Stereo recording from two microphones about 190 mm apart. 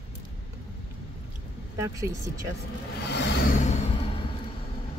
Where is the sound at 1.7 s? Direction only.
15° right (ahead or behind).